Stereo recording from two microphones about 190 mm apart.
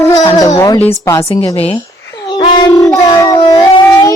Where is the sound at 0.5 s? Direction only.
20° left (ahead or behind).